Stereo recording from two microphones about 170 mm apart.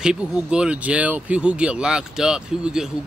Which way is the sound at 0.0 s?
5° right (ahead or behind).